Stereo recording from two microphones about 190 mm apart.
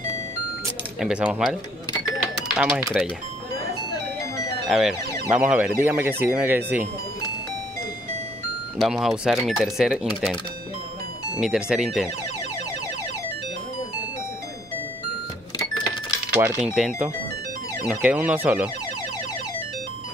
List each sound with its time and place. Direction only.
0.9 s speech: 5° right (ahead or behind)
4.6 s speech: centre (ahead or behind)
8.7 s speech: centre (ahead or behind)
11.3 s speech: 5° right (ahead or behind)
16.3 s speech: 10° right (ahead or behind)